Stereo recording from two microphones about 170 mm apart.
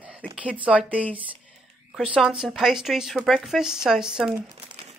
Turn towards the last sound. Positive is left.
turn(degrees=-5)  # may be behind; listen again after turning